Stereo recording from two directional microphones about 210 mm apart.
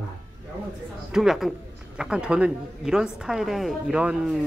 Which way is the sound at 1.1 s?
Centre (ahead or behind).